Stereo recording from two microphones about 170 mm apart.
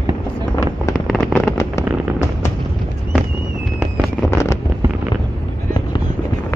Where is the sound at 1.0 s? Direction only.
Centre (ahead or behind).